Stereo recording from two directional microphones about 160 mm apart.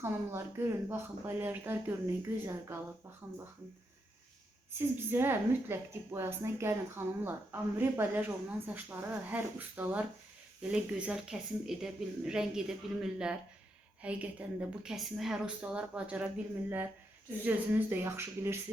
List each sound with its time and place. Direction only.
0.0 s a woman's voice: 15° right (ahead or behind)
4.8 s a woman's voice: 15° right (ahead or behind)